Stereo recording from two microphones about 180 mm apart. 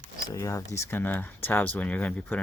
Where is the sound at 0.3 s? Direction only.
15° left (ahead or behind).